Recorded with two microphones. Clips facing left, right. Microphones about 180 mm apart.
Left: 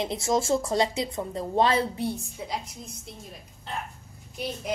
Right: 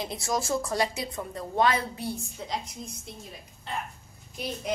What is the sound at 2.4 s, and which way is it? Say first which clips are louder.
Speech: left 1 dB; 5° left (ahead or behind).